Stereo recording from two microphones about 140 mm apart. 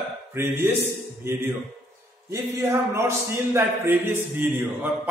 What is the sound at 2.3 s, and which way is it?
A man's voice, 20° right (ahead or behind).